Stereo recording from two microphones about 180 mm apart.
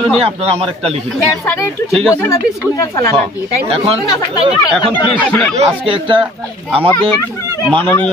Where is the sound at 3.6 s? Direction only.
35° right (ahead or behind).